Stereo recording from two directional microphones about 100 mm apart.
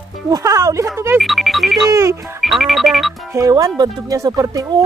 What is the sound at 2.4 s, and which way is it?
Speech, centre (ahead or behind).